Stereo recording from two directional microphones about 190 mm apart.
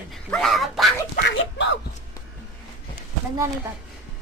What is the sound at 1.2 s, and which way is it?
Speech, 70° left (ahead or behind).